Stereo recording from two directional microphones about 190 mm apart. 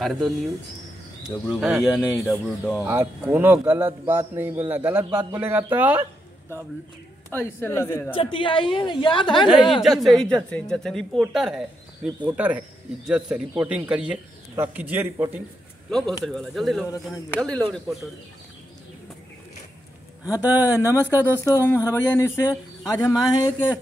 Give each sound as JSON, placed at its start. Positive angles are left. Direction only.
{"t": 1.6, "sound": "speech", "side_deg": 0}
{"t": 2.8, "sound": "a man's voice", "side_deg": -10}
{"t": 5.1, "sound": "a man's voice", "side_deg": -20}
{"t": 5.4, "sound": "a man's voice", "side_deg": -10}
{"t": 7.3, "sound": "speech", "side_deg": 10}
{"t": 8.1, "sound": "a woman's voice", "side_deg": 25}
{"t": 9.7, "sound": "a man's voice", "side_deg": 0}
{"t": 15.9, "sound": "speech", "side_deg": 0}
{"t": 16.9, "sound": "speech", "side_deg": 20}
{"t": 17.6, "sound": "speech", "side_deg": 0}
{"t": 20.2, "sound": "speech", "side_deg": 15}
{"t": 21.0, "sound": "a man's voice", "side_deg": -10}
{"t": 21.6, "sound": "speech", "side_deg": 10}